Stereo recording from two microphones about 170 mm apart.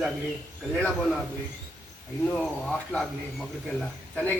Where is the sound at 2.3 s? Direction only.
5° left (ahead or behind).